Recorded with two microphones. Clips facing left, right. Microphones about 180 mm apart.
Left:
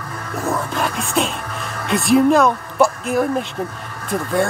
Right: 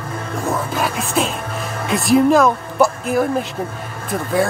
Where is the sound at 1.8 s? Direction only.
Centre (ahead or behind).